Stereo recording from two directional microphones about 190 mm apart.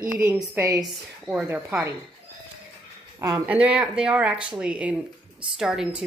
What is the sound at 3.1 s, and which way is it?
Speech, 15° right (ahead or behind).